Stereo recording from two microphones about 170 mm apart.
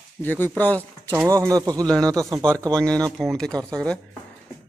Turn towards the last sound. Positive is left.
turn(degrees=5)  # may be behind; listen again after turning